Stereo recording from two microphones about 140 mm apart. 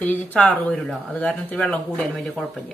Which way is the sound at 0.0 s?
10° left (ahead or behind).